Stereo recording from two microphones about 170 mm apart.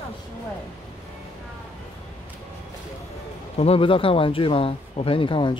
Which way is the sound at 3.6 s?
35° left (ahead or behind).